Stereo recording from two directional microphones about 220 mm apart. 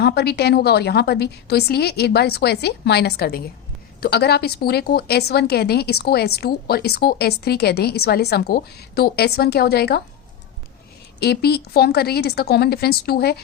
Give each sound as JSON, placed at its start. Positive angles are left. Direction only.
{"t": 0.0, "sound": "a woman's voice", "side_deg": 45}
{"t": 11.2, "sound": "a woman's voice", "side_deg": 45}